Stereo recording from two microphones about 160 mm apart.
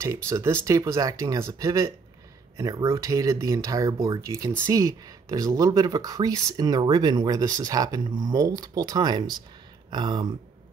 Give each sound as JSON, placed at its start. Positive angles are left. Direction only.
{"t": 0.0, "sound": "speech", "side_deg": -15}